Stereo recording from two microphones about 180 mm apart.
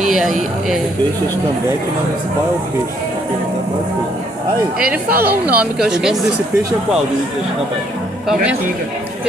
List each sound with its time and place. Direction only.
0.1 s speech: centre (ahead or behind)
5.1 s a woman's voice: 60° right (ahead or behind)
5.5 s speech: 5° right (ahead or behind)